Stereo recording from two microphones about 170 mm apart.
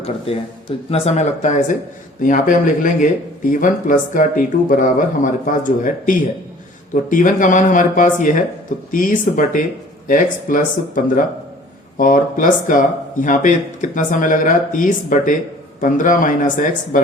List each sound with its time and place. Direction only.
0.9 s speech: 35° left (ahead or behind)